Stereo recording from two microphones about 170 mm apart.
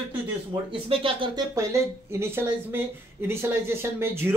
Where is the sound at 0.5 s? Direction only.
30° right (ahead or behind).